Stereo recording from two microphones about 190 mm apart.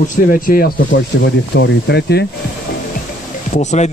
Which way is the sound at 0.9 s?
70° left (ahead or behind).